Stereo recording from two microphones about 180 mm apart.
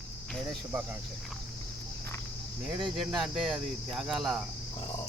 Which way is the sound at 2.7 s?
Centre (ahead or behind).